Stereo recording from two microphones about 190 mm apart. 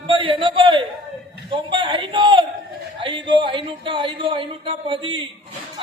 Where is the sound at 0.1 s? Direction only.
25° right (ahead or behind).